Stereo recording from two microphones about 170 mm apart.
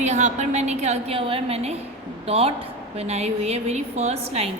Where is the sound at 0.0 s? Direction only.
45° right (ahead or behind).